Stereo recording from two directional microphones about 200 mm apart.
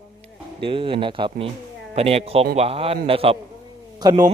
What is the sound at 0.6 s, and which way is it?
Speech, 25° right (ahead or behind).